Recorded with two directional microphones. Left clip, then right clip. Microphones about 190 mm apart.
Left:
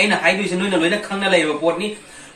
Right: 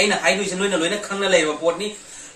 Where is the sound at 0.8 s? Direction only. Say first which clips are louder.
Left 3 dB; 25° right (ahead or behind).